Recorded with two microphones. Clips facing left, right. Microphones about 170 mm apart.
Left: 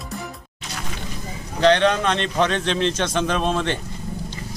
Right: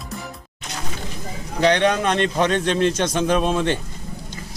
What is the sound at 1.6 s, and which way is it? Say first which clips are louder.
Speech: left 1 dB; 15° right (ahead or behind).